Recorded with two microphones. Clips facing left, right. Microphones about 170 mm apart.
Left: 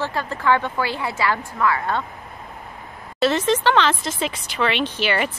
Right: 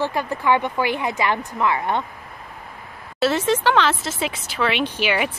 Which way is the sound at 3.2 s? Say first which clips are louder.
Even; 5° right (ahead or behind).